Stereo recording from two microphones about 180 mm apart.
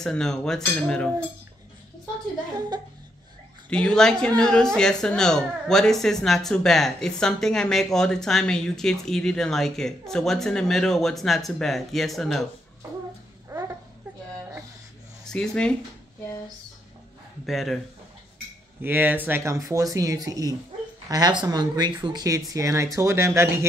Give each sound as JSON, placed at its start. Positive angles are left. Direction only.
{"t": 0.0, "sound": "speech", "side_deg": 5}
{"t": 3.7, "sound": "speech", "side_deg": 5}
{"t": 13.5, "sound": "a sound", "side_deg": -20}
{"t": 15.2, "sound": "speech", "side_deg": 5}
{"t": 17.5, "sound": "speech", "side_deg": 0}
{"t": 18.8, "sound": "speech", "side_deg": -10}